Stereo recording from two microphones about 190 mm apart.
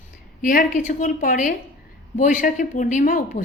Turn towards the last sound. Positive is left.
turn(degrees=45)  # may be behind; listen again after turning